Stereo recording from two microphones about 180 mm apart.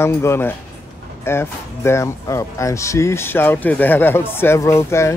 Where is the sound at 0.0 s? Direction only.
15° left (ahead or behind).